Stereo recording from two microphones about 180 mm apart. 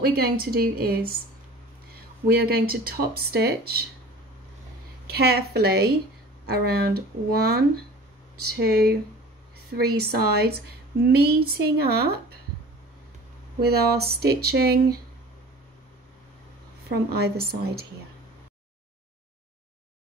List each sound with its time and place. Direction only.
0.0 s speech: 55° right (ahead or behind)
2.2 s speech: 60° right (ahead or behind)
5.0 s speech: 60° right (ahead or behind)
9.8 s speech: 60° right (ahead or behind)
13.6 s speech: 60° right (ahead or behind)
16.9 s speech: 60° right (ahead or behind)